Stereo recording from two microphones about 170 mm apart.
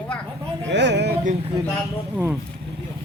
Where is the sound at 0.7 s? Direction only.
90° right.